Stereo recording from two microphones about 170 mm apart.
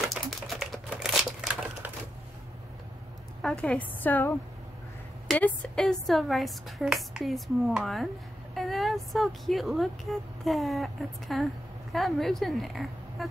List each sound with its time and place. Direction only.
0.1 s typewriter: centre (ahead or behind)
3.4 s a woman's voice: 5° left (ahead or behind)
5.3 s a woman's voice: 5° left (ahead or behind)